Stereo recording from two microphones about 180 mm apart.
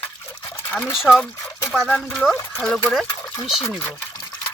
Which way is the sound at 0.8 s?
Centre (ahead or behind).